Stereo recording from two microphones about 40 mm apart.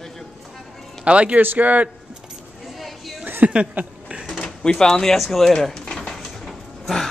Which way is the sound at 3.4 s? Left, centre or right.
Right.